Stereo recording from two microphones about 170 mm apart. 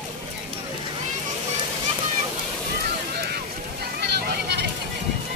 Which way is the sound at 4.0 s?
70° right (ahead or behind).